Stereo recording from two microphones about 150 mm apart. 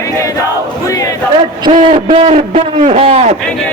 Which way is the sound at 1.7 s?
60° right (ahead or behind).